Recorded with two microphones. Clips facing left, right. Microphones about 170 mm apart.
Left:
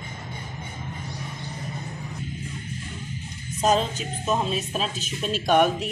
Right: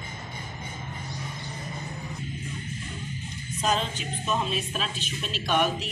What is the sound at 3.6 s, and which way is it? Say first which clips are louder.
Speech: left 5 dB; 40° left (ahead or behind).